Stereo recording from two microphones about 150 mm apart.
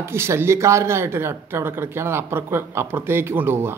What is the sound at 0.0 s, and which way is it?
Speech, 15° right (ahead or behind).